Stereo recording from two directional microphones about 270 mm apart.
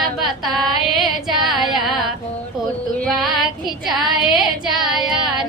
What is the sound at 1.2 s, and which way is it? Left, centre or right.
Female singing, centre.